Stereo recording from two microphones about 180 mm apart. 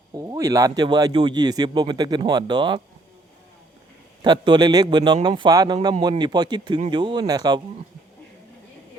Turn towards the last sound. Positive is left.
turn(degrees=-20)  # may be behind; listen again after turning